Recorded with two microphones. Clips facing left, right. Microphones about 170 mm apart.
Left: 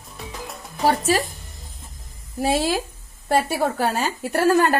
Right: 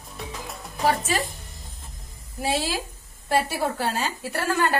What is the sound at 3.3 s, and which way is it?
A woman's voice, 55° left (ahead or behind).